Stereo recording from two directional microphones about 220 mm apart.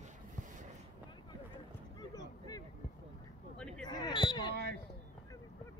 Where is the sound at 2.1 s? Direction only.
15° left (ahead or behind).